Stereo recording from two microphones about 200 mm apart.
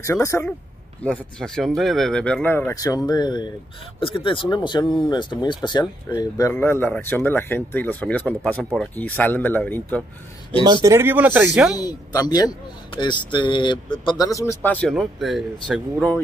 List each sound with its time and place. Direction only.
0.0 s speech: 15° left (ahead or behind)
10.6 s speech: 20° right (ahead or behind)
11.7 s speech: 20° left (ahead or behind)